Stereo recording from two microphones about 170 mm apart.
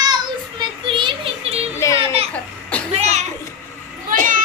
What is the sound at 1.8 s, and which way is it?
Speech, 15° left (ahead or behind).